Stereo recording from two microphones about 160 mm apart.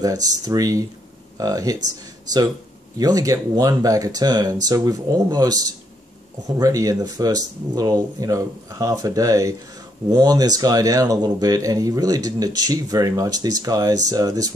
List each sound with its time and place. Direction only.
0.0 s speech: 20° right (ahead or behind)
3.0 s speech: 20° right (ahead or behind)